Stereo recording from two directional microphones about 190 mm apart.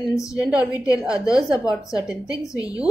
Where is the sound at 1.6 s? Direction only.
15° left (ahead or behind).